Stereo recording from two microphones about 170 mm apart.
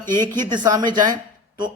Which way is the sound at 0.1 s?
25° right (ahead or behind).